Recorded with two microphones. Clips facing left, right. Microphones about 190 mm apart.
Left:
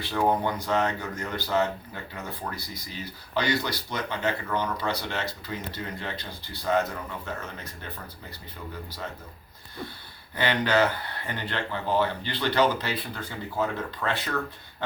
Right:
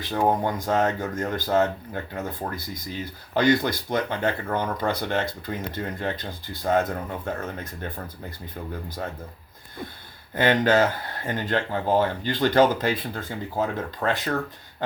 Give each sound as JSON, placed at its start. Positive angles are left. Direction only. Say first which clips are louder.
{"t": 0.1, "sound": "speech", "louder": "right 2 dB", "side_deg": -45}
{"t": 10.3, "sound": "speech", "louder": "right 4 dB", "side_deg": -45}